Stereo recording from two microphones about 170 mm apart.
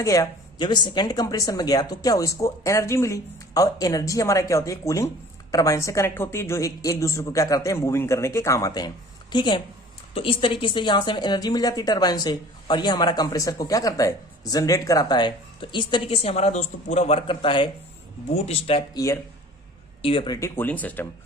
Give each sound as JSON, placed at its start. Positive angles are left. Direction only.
{"t": 0.0, "sound": "a woman's voice", "side_deg": 20}
{"t": 18.9, "sound": "speech", "side_deg": 15}
{"t": 20.0, "sound": "speech", "side_deg": 35}
{"t": 20.6, "sound": "speech", "side_deg": 10}